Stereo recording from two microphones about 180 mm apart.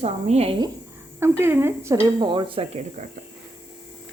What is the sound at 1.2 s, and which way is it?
Speech, 15° right (ahead or behind).